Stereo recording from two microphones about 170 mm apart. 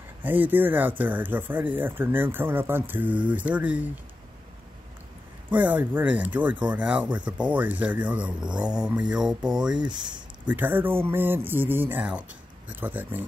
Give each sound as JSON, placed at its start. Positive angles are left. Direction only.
{"t": 0.2, "sound": "speech", "side_deg": -10}
{"t": 5.5, "sound": "speech", "side_deg": -10}
{"t": 8.8, "sound": "mantra", "side_deg": -5}
{"t": 9.8, "sound": "speech", "side_deg": -25}
{"t": 10.4, "sound": "speech", "side_deg": -10}